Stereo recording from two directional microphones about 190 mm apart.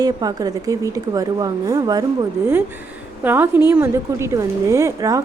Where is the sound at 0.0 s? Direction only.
20° right (ahead or behind).